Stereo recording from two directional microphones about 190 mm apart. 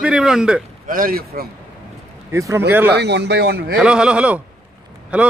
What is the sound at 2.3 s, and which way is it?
Speech, 15° right (ahead or behind).